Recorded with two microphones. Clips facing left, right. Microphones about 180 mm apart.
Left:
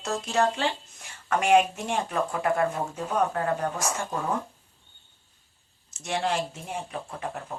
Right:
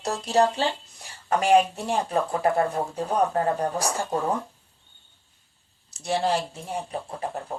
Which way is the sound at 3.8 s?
35° right (ahead or behind).